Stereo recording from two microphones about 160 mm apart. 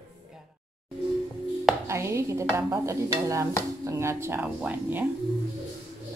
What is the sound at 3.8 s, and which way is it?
Speech, 20° right (ahead or behind).